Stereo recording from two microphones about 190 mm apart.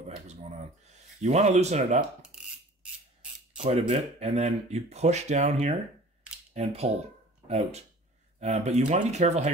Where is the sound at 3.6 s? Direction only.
35° right (ahead or behind).